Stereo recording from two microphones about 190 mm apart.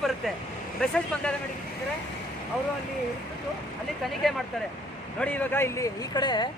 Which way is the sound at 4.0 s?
Centre (ahead or behind).